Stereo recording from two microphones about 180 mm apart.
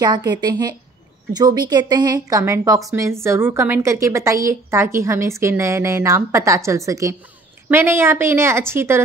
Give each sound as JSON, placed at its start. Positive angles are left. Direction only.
{"t": 0.3, "sound": "a woman's voice", "side_deg": -20}